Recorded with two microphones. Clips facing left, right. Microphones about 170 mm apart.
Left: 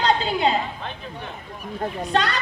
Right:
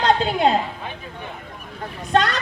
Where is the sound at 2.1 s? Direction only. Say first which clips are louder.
Right 4 dB; 45° right (ahead or behind).